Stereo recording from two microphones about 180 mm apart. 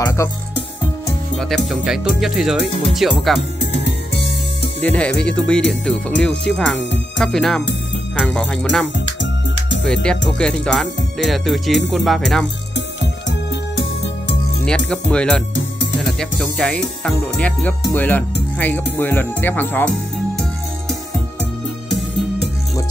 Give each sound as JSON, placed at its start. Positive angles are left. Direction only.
{"t": 0.0, "sound": "speech", "side_deg": 15}
{"t": 1.4, "sound": "speech", "side_deg": 0}
{"t": 4.8, "sound": "speech", "side_deg": 5}
{"t": 8.9, "sound": "music", "side_deg": 90}
{"t": 10.0, "sound": "speech", "side_deg": 5}
{"t": 14.7, "sound": "speech", "side_deg": 5}